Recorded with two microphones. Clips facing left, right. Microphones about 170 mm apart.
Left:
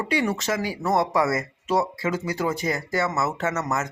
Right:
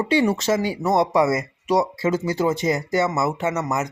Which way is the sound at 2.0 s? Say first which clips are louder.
Right 5 dB; 25° right (ahead or behind).